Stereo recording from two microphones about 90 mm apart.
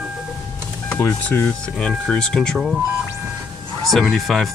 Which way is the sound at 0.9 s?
15° left (ahead or behind).